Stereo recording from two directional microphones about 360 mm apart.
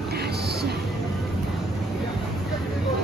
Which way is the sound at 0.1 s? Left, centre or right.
Right.